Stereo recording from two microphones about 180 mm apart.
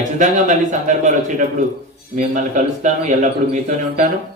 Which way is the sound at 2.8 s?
40° right (ahead or behind).